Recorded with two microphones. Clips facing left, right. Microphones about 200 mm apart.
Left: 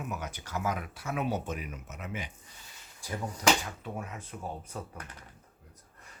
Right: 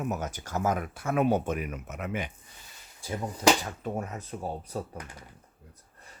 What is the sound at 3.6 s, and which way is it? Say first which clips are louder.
Speech: right 6 dB; 40° right (ahead or behind).